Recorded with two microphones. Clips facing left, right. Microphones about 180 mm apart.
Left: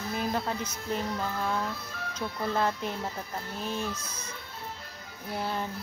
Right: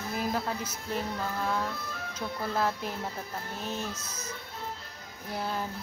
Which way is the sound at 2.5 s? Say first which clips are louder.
Left 1 dB; 5° right (ahead or behind).